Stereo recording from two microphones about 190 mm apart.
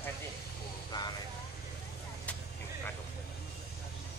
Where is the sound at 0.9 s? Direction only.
20° left (ahead or behind).